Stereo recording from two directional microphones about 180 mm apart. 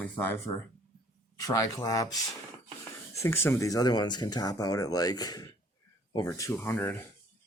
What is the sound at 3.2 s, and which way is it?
Speech, 15° left (ahead or behind).